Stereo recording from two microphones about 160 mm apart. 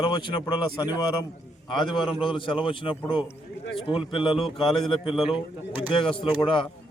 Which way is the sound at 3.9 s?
30° left (ahead or behind).